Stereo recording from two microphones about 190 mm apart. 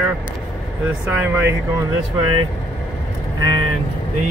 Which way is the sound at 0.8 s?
5° right (ahead or behind).